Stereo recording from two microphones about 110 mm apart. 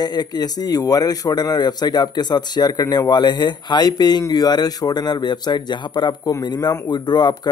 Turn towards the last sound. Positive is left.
turn(degrees=40)  # may be behind; listen again after turning